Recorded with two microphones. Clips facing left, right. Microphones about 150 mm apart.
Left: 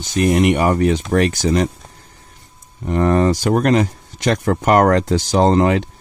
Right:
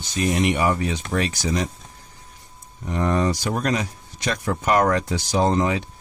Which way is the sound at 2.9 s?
55° left (ahead or behind).